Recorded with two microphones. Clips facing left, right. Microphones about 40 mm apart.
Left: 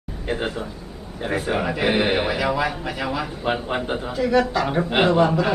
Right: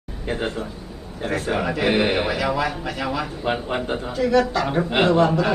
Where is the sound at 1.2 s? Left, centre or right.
Centre.